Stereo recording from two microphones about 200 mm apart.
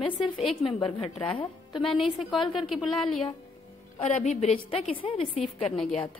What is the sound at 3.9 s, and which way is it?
A woman's voice, 35° left (ahead or behind).